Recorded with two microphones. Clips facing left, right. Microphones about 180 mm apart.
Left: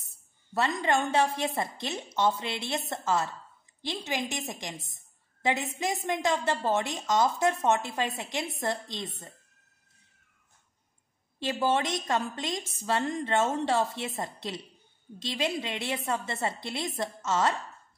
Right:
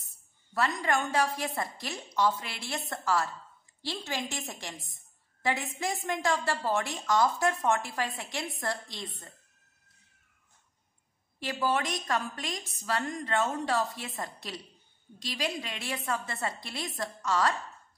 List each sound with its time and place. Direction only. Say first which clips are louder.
0.6 s a woman's voice: left 2 dB; 20° left (ahead or behind)
11.3 s a woman's voice: left 3 dB; 25° left (ahead or behind)